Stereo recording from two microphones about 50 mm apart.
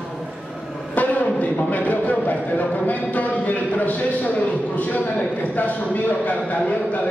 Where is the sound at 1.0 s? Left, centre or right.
Left.